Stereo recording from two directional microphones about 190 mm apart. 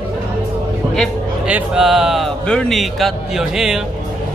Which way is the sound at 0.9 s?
5° right (ahead or behind).